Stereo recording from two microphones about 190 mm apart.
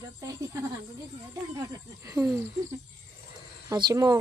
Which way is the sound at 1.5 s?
15° right (ahead or behind).